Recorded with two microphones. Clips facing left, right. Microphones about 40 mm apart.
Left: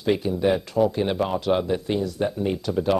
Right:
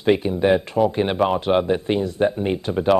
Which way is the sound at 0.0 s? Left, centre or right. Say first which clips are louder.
Right 4 dB; right.